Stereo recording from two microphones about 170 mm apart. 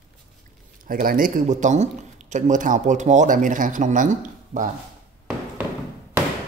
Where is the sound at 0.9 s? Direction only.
55° right (ahead or behind).